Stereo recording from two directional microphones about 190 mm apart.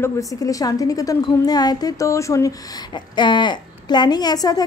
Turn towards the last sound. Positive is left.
turn(degrees=20)  # may be behind; listen again after turning